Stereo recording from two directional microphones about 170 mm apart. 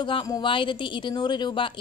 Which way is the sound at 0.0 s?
25° left (ahead or behind).